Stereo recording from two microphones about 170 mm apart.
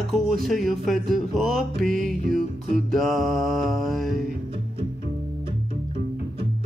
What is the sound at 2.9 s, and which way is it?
Speech, centre (ahead or behind).